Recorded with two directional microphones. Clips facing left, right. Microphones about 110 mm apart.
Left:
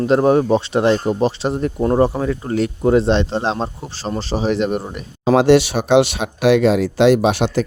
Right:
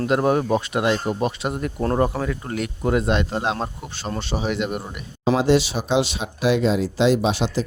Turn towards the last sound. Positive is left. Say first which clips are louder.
# left 5 dB
turn(degrees=60)  # may be behind; listen again after turning